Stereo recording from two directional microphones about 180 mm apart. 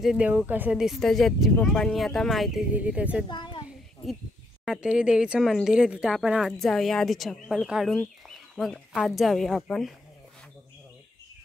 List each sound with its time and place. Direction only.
0.0 s speech: 5° right (ahead or behind)
3.3 s a child's voice: 25° left (ahead or behind)
4.6 s speech: 5° right (ahead or behind)